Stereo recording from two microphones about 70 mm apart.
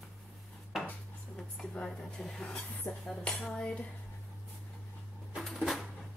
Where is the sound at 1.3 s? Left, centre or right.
Centre.